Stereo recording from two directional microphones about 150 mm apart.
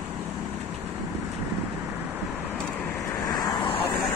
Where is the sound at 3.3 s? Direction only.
25° left (ahead or behind).